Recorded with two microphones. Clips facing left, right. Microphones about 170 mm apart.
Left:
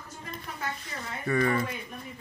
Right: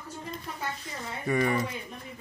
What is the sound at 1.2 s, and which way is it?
Speech, 15° right (ahead or behind).